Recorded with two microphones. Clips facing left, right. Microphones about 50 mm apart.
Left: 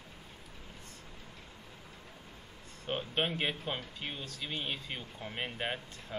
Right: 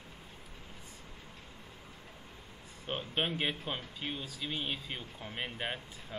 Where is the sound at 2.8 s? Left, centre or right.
Centre.